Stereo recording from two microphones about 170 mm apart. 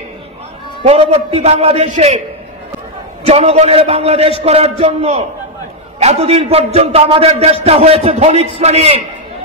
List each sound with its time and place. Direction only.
0.8 s a man's voice: 35° right (ahead or behind)
3.3 s a man's voice: 40° right (ahead or behind)